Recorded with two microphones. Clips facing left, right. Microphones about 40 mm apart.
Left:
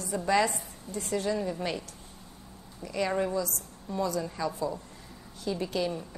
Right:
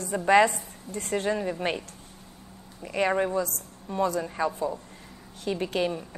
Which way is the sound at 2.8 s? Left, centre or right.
Right.